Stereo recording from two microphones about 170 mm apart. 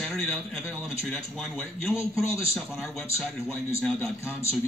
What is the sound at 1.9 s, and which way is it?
Speech, 15° left (ahead or behind).